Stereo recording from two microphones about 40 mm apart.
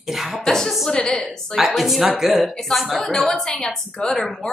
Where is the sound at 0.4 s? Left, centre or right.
Centre.